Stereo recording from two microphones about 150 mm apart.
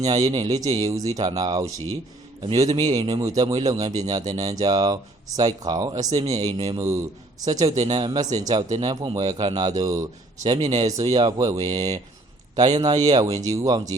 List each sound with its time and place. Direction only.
0.0 s a man's voice: 25° right (ahead or behind)
2.6 s a man's voice: 25° right (ahead or behind)